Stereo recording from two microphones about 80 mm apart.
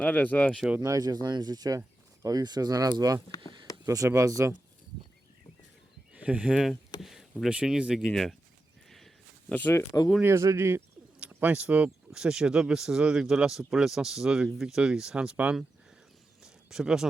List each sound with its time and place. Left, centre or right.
0.0 s speech: centre
0.8 s speech: right
3.3 s speech: left
3.8 s speech: right
6.1 s speech: centre
7.0 s a sound: centre
7.4 s speech: centre
8.1 s speech: centre
8.9 s a sound: centre
9.5 s speech: left
9.9 s speech: left
10.2 s speech: right
11.2 s speech: right
16.4 s a sound: centre